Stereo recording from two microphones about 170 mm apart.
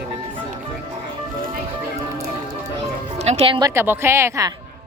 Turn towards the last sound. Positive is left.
turn(degrees=-15)  # may be behind; listen again after turning